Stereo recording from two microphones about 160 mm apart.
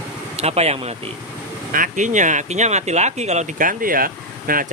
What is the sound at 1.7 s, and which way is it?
Speech, 55° right (ahead or behind).